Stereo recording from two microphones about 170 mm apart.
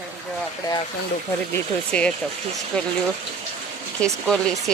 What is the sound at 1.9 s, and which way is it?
Speech, 5° left (ahead or behind).